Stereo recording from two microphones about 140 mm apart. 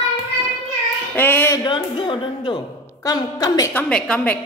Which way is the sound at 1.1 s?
15° left (ahead or behind).